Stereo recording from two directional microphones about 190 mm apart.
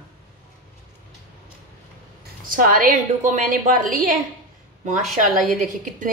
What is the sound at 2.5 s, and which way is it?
A woman's voice, 45° right (ahead or behind).